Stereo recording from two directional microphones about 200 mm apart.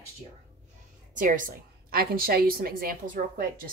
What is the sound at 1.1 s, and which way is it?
A woman's voice, 40° right (ahead or behind).